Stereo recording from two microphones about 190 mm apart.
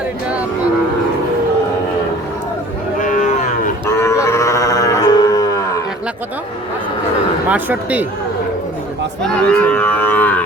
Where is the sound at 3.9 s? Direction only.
15° left (ahead or behind).